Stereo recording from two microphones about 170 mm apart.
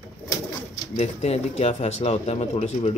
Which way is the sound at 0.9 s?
40° left (ahead or behind).